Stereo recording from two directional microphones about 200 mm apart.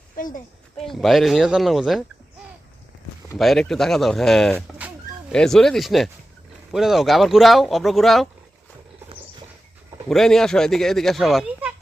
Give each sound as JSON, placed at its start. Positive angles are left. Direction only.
{"t": 0.2, "sound": "a woman's voice", "side_deg": 40}
{"t": 0.8, "sound": "speech", "side_deg": 0}
{"t": 3.3, "sound": "speech", "side_deg": 0}
{"t": 10.1, "sound": "speech", "side_deg": 0}